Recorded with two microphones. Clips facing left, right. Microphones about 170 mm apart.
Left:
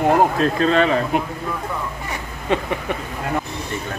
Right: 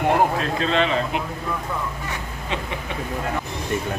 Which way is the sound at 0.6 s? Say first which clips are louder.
Left 4 dB; 45° left (ahead or behind).